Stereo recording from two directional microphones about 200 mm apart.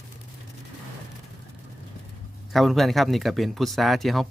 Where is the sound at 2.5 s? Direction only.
Centre (ahead or behind).